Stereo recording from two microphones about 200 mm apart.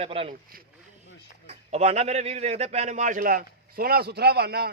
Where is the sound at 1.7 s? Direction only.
30° right (ahead or behind).